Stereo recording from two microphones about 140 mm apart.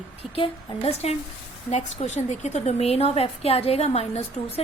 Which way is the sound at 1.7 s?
55° left (ahead or behind).